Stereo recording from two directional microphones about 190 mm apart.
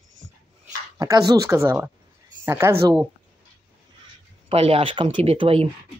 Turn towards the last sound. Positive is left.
turn(degrees=-30)  # may be behind; listen again after turning